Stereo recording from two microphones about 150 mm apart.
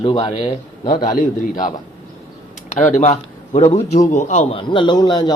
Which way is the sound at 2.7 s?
55° left (ahead or behind).